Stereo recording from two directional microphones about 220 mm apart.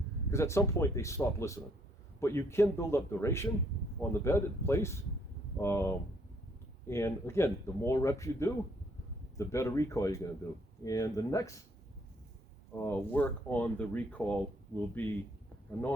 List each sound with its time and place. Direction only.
0.3 s speech: 10° left (ahead or behind)
12.7 s speech: 10° left (ahead or behind)